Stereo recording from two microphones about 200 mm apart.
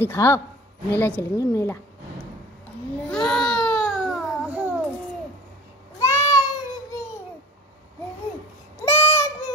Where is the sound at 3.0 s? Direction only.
5° left (ahead or behind).